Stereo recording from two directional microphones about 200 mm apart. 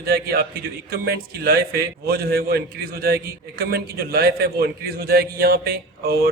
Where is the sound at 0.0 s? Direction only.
50° right (ahead or behind).